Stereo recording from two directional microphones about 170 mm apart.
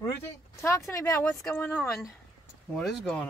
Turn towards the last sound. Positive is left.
turn(degrees=5)  # may be behind; listen again after turning